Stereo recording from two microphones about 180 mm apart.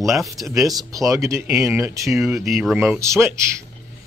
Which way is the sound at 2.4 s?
Centre (ahead or behind).